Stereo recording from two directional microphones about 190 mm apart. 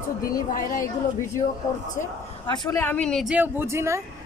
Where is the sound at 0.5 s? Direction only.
45° left (ahead or behind).